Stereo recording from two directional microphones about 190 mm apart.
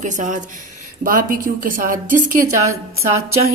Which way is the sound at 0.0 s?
40° right (ahead or behind).